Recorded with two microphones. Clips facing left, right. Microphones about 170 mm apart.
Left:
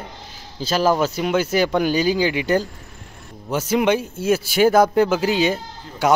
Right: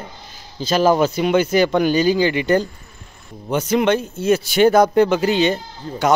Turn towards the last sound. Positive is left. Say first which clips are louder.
# right 1 dB
turn(degrees=5)  # may be behind; listen again after turning